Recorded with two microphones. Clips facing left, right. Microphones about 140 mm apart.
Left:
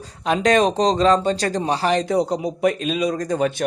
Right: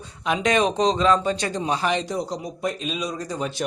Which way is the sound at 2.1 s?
65° left (ahead or behind).